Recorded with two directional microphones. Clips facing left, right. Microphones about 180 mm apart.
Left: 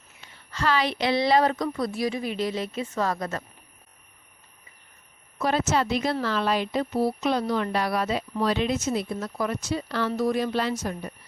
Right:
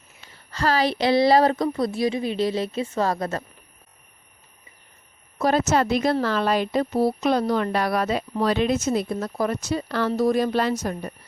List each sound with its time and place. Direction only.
0.3 s speech: 35° right (ahead or behind)
5.4 s speech: 40° right (ahead or behind)